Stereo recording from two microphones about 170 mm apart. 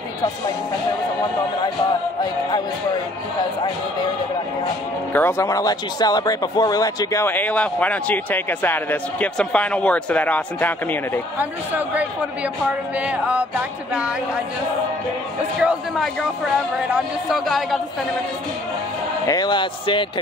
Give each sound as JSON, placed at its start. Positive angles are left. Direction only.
{"t": 5.1, "sound": "speech", "side_deg": 15}
{"t": 13.0, "sound": "speech", "side_deg": -10}
{"t": 15.6, "sound": "speech", "side_deg": -5}
{"t": 19.2, "sound": "a man's voice", "side_deg": 25}